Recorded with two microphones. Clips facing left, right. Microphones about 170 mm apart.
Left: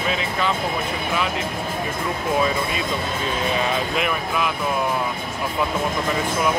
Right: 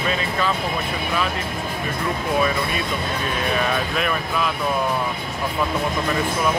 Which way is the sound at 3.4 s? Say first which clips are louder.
Even; 25° left (ahead or behind).